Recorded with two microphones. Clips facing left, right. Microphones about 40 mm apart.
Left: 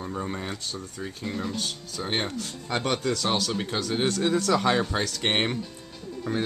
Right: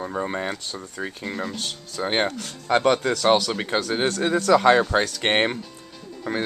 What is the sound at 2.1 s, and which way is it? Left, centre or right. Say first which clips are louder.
Speech: right 5 dB; right.